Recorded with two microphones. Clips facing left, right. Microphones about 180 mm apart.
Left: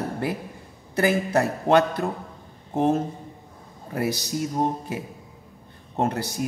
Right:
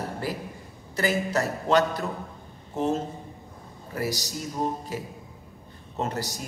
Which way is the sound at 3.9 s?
55° left (ahead or behind).